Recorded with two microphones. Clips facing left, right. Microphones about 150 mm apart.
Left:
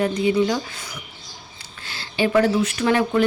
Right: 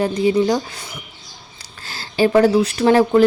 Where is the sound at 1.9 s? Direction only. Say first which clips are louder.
Right 5 dB; 40° right (ahead or behind).